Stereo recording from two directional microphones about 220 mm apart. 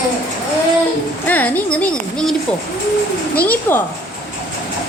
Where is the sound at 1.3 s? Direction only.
10° left (ahead or behind).